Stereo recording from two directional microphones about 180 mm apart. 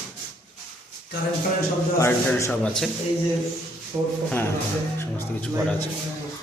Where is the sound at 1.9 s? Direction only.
15° left (ahead or behind).